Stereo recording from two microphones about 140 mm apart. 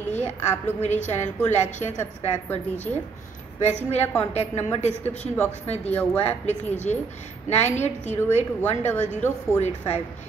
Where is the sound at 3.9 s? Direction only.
50° left (ahead or behind).